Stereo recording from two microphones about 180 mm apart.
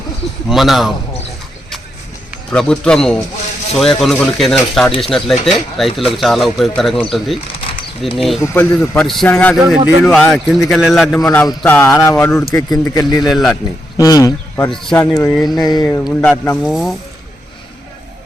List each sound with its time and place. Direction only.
0.4 s a man's voice: centre (ahead or behind)
2.5 s a man's voice: 5° left (ahead or behind)
8.4 s a man's voice: 10° left (ahead or behind)
11.3 s speech: 15° left (ahead or behind)
13.3 s a man's voice: centre (ahead or behind)
13.9 s speech: 20° left (ahead or behind)
14.6 s a man's voice: 5° left (ahead or behind)
15.5 s speech: 20° left (ahead or behind)
15.8 s a man's voice: 10° left (ahead or behind)